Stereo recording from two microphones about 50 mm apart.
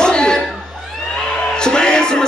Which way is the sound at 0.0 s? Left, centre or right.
Centre.